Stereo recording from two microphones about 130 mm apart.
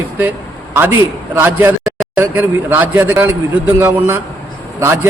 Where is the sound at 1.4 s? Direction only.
15° right (ahead or behind).